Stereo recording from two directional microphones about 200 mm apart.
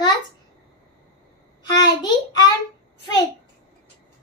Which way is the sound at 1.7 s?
20° left (ahead or behind).